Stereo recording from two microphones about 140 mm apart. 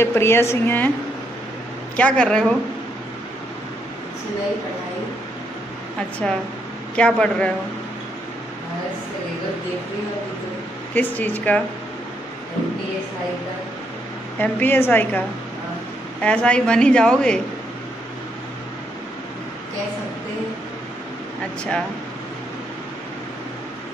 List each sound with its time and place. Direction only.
0.0 s a woman's voice: 15° left (ahead or behind)
2.0 s a woman's voice: 10° left (ahead or behind)
6.2 s a woman's voice: 5° left (ahead or behind)
11.0 s a woman's voice: 10° left (ahead or behind)
14.4 s a woman's voice: 15° left (ahead or behind)